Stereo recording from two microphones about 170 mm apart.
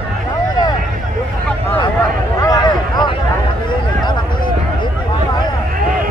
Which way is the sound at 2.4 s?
25° left (ahead or behind).